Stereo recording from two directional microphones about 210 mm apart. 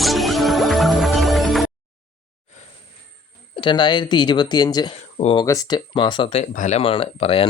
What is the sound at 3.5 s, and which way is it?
Speech, 25° left (ahead or behind).